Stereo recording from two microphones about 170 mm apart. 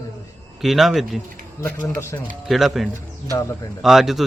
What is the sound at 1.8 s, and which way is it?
Speech, 15° left (ahead or behind).